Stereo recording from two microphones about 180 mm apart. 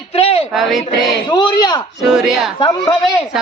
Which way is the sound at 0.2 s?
35° left (ahead or behind).